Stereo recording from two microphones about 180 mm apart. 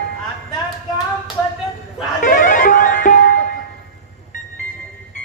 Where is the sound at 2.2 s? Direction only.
45° left (ahead or behind).